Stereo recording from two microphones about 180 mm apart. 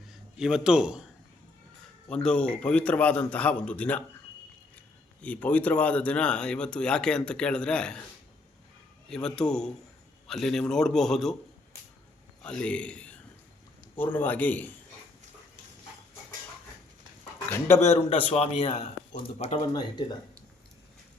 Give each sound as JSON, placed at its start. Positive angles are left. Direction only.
{"t": 0.3, "sound": "speech", "side_deg": -5}
{"t": 2.0, "sound": "a man's voice", "side_deg": 5}
{"t": 5.2, "sound": "speech", "side_deg": 5}
{"t": 9.0, "sound": "speech", "side_deg": 5}
{"t": 12.4, "sound": "a man's voice", "side_deg": 5}
{"t": 17.7, "sound": "a man's voice", "side_deg": 35}
{"t": 19.7, "sound": "speech", "side_deg": 25}